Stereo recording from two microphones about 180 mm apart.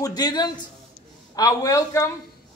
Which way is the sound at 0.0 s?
20° left (ahead or behind).